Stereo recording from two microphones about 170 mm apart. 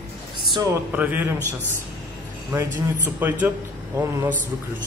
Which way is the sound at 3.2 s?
10° right (ahead or behind).